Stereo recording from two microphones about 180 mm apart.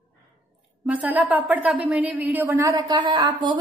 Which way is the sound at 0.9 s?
10° right (ahead or behind).